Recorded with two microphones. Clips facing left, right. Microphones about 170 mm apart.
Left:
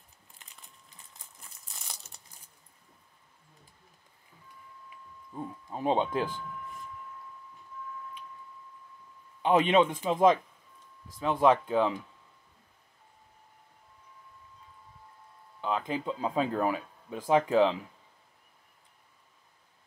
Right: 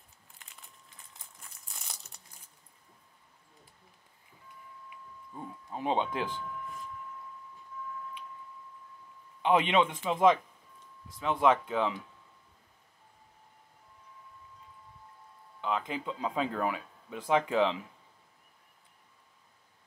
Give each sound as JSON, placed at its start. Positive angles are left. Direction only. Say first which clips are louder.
{"t": 5.8, "sound": "speech", "louder": "left 3 dB", "side_deg": 40}
{"t": 9.4, "sound": "speech", "louder": "left 3 dB", "side_deg": 40}
{"t": 11.3, "sound": "speech", "louder": "left 3 dB", "side_deg": 30}
{"t": 15.6, "sound": "speech", "louder": "left 2 dB", "side_deg": 35}